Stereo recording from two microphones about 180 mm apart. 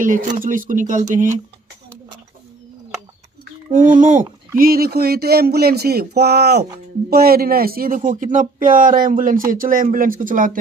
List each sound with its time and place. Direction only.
0.0 s speech: 45° right (ahead or behind)
3.7 s speech: 45° right (ahead or behind)
4.6 s speech: 55° right (ahead or behind)